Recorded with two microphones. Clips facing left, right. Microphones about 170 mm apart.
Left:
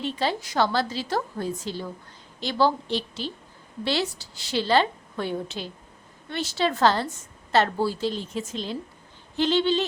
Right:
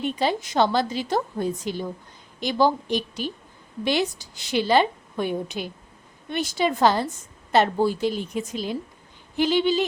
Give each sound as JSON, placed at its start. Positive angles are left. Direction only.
{"t": 0.0, "sound": "a woman's voice", "side_deg": -15}